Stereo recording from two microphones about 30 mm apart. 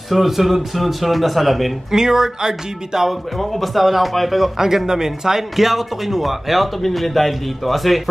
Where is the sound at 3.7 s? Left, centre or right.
Centre.